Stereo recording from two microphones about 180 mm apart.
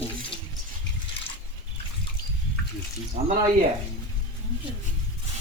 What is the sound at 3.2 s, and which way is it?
Speech, 40° right (ahead or behind).